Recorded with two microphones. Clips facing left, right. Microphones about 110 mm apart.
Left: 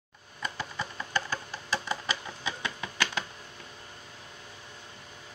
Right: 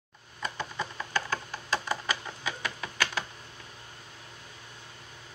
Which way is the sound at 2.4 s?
20° left (ahead or behind).